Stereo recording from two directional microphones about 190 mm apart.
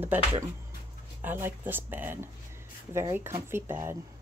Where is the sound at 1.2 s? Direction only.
10° right (ahead or behind).